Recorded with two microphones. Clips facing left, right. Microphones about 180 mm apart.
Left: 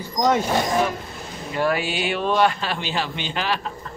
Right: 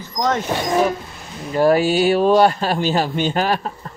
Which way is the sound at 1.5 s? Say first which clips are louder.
Right 8 dB; 40° right (ahead or behind).